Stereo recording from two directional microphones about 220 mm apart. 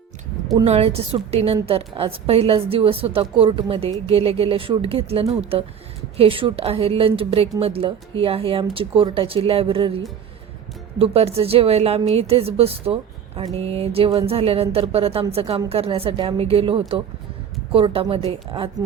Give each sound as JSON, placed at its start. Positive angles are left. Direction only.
{"t": 0.6, "sound": "a woman's voice", "side_deg": -30}
{"t": 11.0, "sound": "a woman's voice", "side_deg": -25}